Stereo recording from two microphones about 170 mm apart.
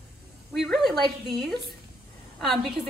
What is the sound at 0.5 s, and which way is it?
Speech, centre (ahead or behind).